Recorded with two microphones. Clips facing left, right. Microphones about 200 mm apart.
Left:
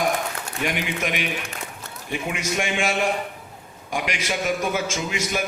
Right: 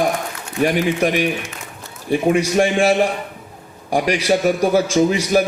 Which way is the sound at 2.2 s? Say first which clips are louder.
Right 11 dB; 35° right (ahead or behind).